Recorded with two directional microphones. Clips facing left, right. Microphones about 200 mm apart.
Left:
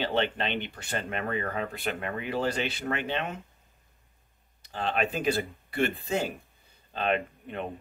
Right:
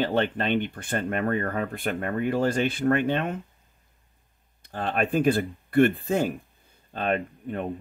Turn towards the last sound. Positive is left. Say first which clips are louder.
# right 4 dB
turn(degrees=-45)  # may be behind; listen again after turning